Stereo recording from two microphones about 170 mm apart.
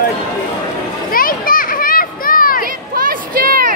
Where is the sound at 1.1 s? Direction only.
55° left (ahead or behind).